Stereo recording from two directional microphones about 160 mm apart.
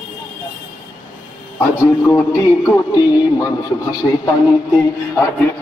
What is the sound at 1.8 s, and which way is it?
Music, 20° left (ahead or behind).